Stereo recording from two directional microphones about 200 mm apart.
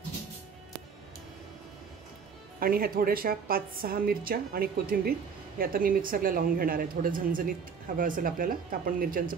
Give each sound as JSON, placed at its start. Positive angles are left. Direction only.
{"t": 2.6, "sound": "a woman's voice", "side_deg": -45}